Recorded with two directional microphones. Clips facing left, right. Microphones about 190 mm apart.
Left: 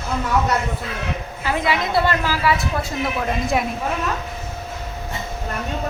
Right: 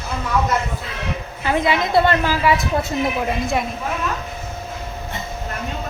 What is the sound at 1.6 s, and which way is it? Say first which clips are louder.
Speech: right 3 dB; 20° right (ahead or behind).